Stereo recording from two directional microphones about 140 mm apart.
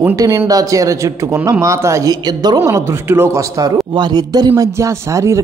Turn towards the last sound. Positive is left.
turn(degrees=-20)  # may be behind; listen again after turning